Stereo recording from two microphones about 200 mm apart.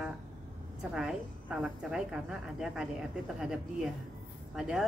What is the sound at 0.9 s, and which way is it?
A woman's voice, 5° right (ahead or behind).